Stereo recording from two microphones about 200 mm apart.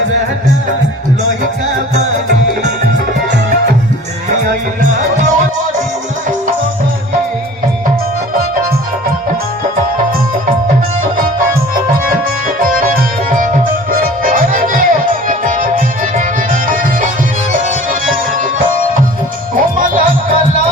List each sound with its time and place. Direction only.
12.6 s music: 45° right (ahead or behind)
19.5 s music: 45° right (ahead or behind)